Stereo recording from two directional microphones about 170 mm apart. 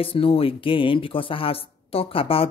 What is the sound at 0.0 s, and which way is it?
Speech, 35° left (ahead or behind).